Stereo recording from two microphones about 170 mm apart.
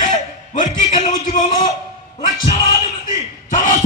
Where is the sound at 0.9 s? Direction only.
45° left (ahead or behind).